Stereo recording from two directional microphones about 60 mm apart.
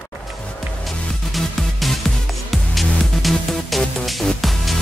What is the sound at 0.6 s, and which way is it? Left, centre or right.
Music, centre.